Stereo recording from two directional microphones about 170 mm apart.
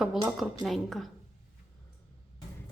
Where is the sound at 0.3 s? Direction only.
Centre (ahead or behind).